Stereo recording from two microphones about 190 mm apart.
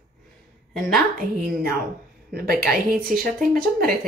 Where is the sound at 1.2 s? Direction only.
50° right (ahead or behind).